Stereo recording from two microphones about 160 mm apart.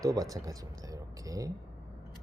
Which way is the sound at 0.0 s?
20° right (ahead or behind).